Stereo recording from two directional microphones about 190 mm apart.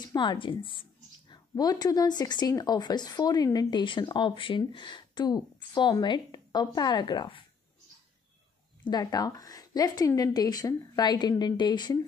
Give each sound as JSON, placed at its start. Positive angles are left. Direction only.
{"t": 0.0, "sound": "speech", "side_deg": 20}
{"t": 8.9, "sound": "speech", "side_deg": 20}